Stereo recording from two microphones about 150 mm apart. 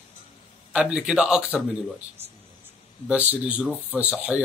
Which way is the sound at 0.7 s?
5° right (ahead or behind).